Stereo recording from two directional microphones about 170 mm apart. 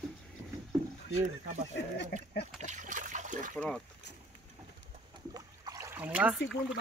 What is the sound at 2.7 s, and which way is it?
Water, 45° right (ahead or behind).